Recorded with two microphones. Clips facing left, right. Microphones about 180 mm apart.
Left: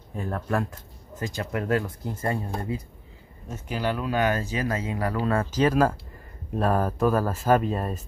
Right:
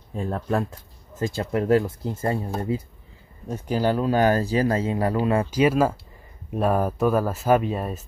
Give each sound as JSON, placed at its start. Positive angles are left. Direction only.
{"t": 0.1, "sound": "speech", "side_deg": -25}
{"t": 5.2, "sound": "speech", "side_deg": -15}